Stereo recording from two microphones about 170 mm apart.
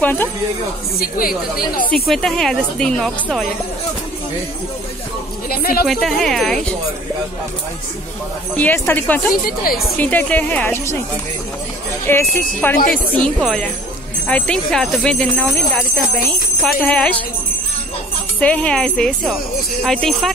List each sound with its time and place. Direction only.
0.0 s speech: 10° left (ahead or behind)
0.9 s a woman's voice: 55° left (ahead or behind)
2.0 s speech: centre (ahead or behind)
5.5 s a woman's voice: 60° left (ahead or behind)
5.9 s speech: centre (ahead or behind)
8.5 s speech: 10° left (ahead or behind)
12.1 s speech: 15° left (ahead or behind)
12.7 s a woman's voice: 55° left (ahead or behind)
13.1 s speech: 5° left (ahead or behind)
18.4 s speech: 10° left (ahead or behind)